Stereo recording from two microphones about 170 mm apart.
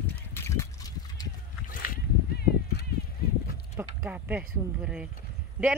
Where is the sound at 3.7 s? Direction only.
10° right (ahead or behind).